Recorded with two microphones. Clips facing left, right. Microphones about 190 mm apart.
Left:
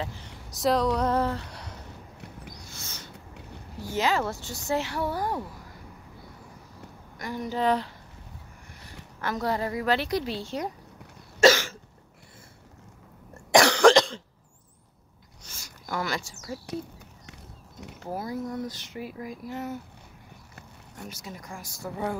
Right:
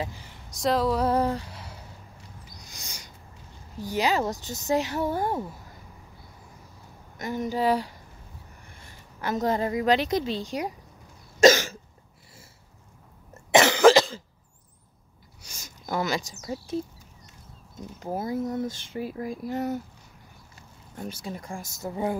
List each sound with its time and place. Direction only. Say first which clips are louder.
0.5 s female singing: even; centre (ahead or behind)
1.5 s a sound: left 1 dB; 5° right (ahead or behind)
2.6 s owl: left 2 dB; 15° right (ahead or behind)
3.8 s speech: right 1 dB; 15° right (ahead or behind)
7.2 s speech: right 2 dB; 20° right (ahead or behind)
9.2 s speech: right 3 dB; 20° right (ahead or behind)
11.4 s cough: right 2 dB; 20° right (ahead or behind)
13.5 s cough: right 1 dB; 5° right (ahead or behind)
15.4 s a sound: right 3 dB; 15° right (ahead or behind)
17.3 s a sound: left 4 dB; 75° left (ahead or behind)
18.0 s speech: right 3 dB; 25° right (ahead or behind)
21.3 s speech: right 5 dB; 30° right (ahead or behind)